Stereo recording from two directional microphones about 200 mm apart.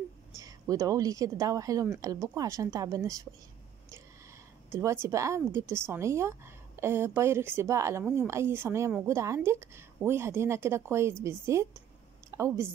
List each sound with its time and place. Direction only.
0.4 s speech: 15° right (ahead or behind)
4.6 s a woman's voice: 10° right (ahead or behind)